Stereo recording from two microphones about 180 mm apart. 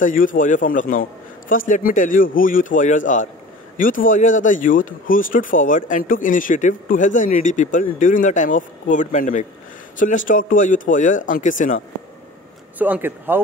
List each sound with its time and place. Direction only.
0.0 s speech: 50° left (ahead or behind)
12.7 s speech: 10° right (ahead or behind)